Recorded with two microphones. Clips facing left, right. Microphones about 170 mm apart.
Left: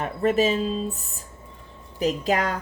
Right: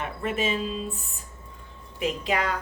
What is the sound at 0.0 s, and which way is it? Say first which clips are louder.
Speech: left 7 dB; 40° left (ahead or behind).